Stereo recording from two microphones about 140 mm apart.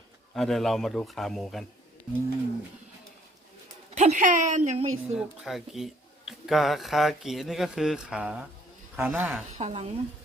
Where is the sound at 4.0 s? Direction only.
60° right (ahead or behind).